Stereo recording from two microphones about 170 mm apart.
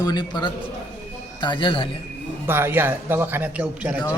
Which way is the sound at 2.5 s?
15° right (ahead or behind).